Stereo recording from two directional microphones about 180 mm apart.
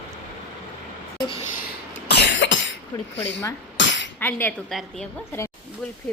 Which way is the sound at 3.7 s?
85° left.